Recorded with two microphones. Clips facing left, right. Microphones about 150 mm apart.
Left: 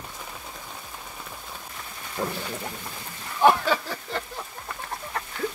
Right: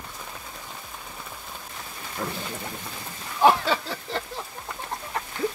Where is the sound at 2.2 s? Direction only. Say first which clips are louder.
Left 3 dB; 15° left (ahead or behind).